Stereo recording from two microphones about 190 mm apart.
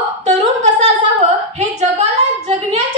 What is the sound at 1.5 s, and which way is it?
A woman's voice, 35° right (ahead or behind).